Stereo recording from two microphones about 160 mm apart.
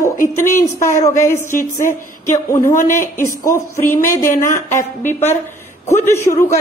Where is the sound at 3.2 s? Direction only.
20° left (ahead or behind).